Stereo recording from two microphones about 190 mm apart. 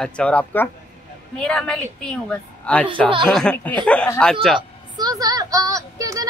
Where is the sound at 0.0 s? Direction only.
5° left (ahead or behind).